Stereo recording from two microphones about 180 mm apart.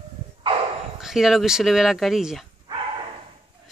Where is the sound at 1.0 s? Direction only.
Centre (ahead or behind).